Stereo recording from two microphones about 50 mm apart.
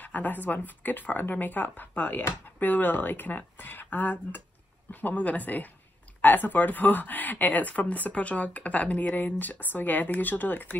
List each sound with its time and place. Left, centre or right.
0.0 s speech: left